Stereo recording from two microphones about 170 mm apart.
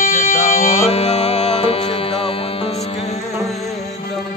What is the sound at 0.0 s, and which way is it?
Music, 50° left (ahead or behind).